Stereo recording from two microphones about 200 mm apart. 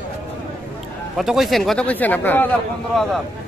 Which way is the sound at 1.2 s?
Centre (ahead or behind).